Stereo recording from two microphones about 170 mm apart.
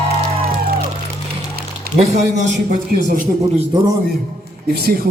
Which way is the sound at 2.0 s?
45° right (ahead or behind).